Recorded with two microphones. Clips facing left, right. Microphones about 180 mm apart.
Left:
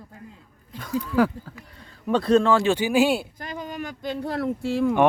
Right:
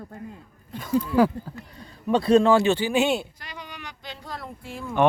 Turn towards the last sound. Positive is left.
turn(degrees=85)